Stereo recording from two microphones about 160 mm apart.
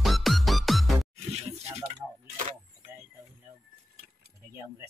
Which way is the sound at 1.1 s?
40° right (ahead or behind).